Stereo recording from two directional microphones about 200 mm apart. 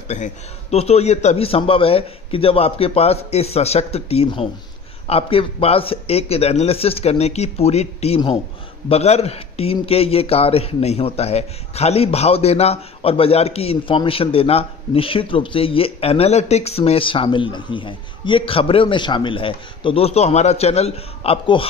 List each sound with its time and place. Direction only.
0.1 s a man's voice: 35° left (ahead or behind)